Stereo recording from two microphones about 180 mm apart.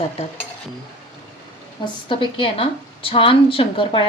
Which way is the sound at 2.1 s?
25° left (ahead or behind).